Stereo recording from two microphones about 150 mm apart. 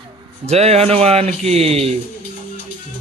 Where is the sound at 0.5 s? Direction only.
45° right (ahead or behind).